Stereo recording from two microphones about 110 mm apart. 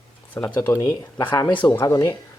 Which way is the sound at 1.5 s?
15° left (ahead or behind).